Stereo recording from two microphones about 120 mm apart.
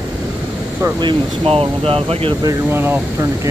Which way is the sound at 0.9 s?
45° right (ahead or behind).